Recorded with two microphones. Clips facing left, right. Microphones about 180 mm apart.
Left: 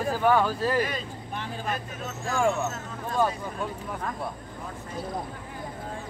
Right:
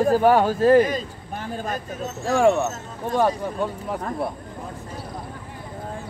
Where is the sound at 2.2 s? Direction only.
75° right (ahead or behind).